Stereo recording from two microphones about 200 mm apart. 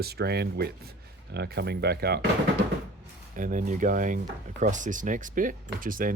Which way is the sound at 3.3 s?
40° right (ahead or behind).